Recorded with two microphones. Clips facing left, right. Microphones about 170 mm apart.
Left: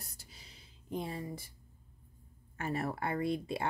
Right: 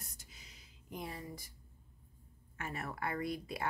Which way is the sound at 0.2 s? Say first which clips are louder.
Left 2 dB; 30° left (ahead or behind).